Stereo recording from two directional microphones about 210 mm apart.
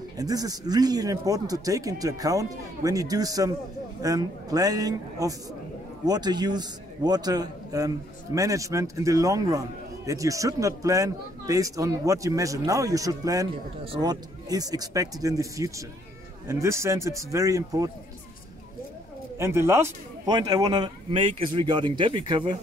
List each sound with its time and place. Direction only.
0.2 s a man's voice: 15° right (ahead or behind)
19.3 s a man's voice: 10° right (ahead or behind)